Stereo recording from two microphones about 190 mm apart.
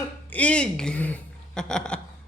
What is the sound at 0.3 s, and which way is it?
Speech, 5° left (ahead or behind).